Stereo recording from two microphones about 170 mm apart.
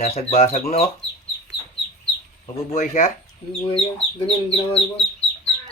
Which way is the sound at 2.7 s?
60° left (ahead or behind).